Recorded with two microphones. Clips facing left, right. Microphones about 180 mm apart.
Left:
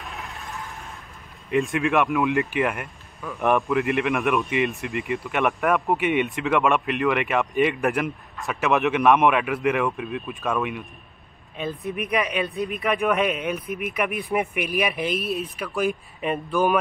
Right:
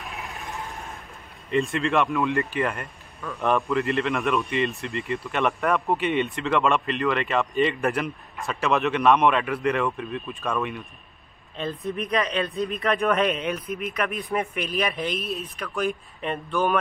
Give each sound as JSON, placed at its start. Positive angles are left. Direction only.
{"t": 0.0, "sound": "a sound", "side_deg": 0}
{"t": 1.7, "sound": "speech", "side_deg": 15}
{"t": 5.5, "sound": "speech", "side_deg": 0}
{"t": 5.9, "sound": "speech", "side_deg": 15}